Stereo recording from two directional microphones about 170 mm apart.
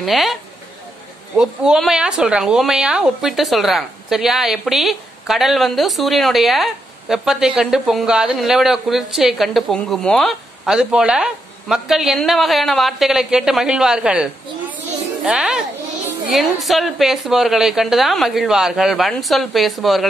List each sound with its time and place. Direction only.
0.0 s speech: centre (ahead or behind)